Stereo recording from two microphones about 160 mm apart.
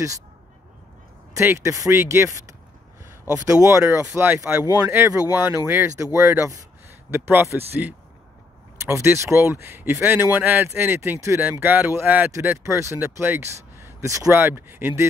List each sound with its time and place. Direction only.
1.3 s speech: 15° right (ahead or behind)
3.4 s speech: 20° right (ahead or behind)